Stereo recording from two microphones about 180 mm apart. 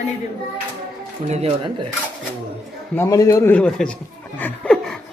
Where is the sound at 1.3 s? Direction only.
35° right (ahead or behind).